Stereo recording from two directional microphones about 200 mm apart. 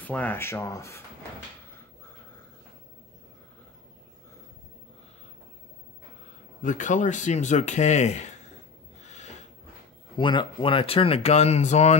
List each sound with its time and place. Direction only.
0.0 s speech: 10° left (ahead or behind)
6.6 s speech: 40° left (ahead or behind)
9.0 s snort: 35° left (ahead or behind)
10.1 s speech: 25° left (ahead or behind)